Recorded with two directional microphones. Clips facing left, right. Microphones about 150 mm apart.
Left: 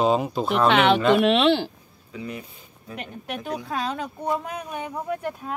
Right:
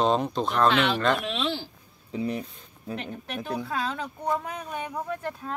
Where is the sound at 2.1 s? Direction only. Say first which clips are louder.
Right 5 dB; 35° right (ahead or behind).